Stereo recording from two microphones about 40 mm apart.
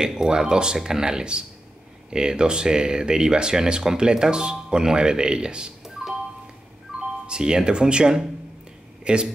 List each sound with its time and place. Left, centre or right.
0.0 s speech: centre
6.9 s music: centre
7.2 s speech: centre